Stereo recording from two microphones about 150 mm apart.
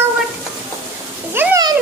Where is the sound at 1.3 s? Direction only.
15° right (ahead or behind).